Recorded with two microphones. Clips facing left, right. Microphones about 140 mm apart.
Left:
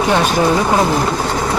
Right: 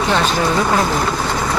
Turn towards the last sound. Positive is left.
turn(degrees=15)  # may be behind; listen again after turning